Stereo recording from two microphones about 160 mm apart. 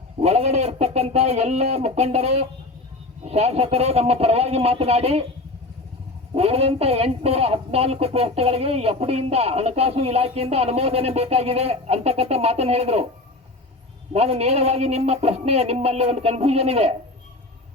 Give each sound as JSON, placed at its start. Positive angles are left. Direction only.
{"t": 0.2, "sound": "speech", "side_deg": -40}
{"t": 6.3, "sound": "speech", "side_deg": -40}
{"t": 14.1, "sound": "speech", "side_deg": -40}